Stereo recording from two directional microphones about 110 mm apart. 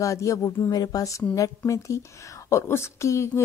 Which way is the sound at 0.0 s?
30° left (ahead or behind).